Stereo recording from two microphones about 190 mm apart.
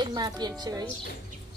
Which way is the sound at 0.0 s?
20° right (ahead or behind).